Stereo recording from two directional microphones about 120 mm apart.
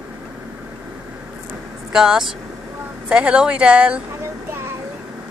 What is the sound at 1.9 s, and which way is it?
A woman's voice, 5° right (ahead or behind).